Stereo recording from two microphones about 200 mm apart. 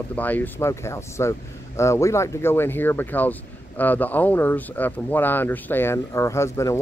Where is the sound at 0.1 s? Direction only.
10° left (ahead or behind).